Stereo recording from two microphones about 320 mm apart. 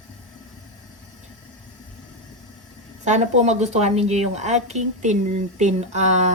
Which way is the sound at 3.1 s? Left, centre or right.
Right.